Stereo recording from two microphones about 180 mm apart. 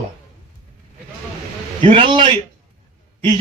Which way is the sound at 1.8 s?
30° right (ahead or behind).